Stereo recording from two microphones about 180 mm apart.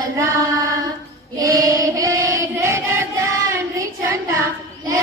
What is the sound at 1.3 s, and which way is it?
Female singing, 20° right (ahead or behind).